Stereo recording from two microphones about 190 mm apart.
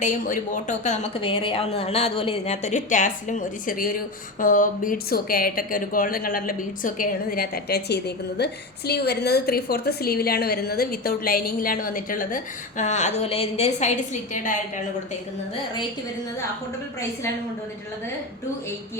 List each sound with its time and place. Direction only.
0.0 s a woman's voice: 45° left (ahead or behind)